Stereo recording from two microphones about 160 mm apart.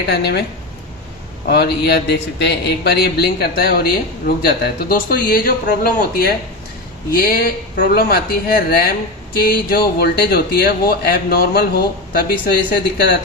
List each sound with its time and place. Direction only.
0.1 s a man's voice: 90° left
1.5 s a man's voice: 90° left; by 12.5 s 70° left (ahead or behind)